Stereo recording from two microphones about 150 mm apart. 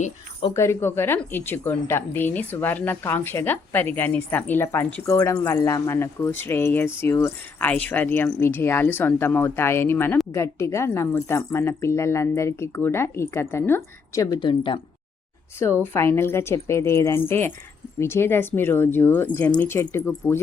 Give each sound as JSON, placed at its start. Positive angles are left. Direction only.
{"t": 0.5, "sound": "a woman's voice", "side_deg": 15}
{"t": 14.3, "sound": "speech", "side_deg": 35}
{"t": 15.8, "sound": "a woman's voice", "side_deg": 15}